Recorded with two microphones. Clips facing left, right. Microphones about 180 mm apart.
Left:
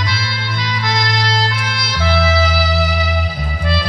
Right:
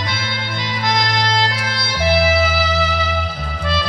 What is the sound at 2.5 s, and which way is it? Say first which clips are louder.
Music: left 1 dB; centre (ahead or behind).